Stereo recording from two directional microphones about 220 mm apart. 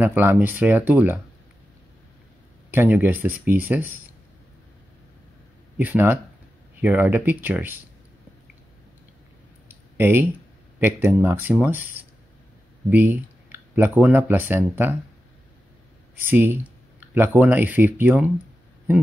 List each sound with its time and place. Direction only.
0.0 s speech: 10° right (ahead or behind)
2.7 s speech: 10° right (ahead or behind)
5.8 s speech: 10° right (ahead or behind)
9.7 s a sound: 10° right (ahead or behind)
10.8 s speech: 10° right (ahead or behind)
16.2 s speech: 10° right (ahead or behind)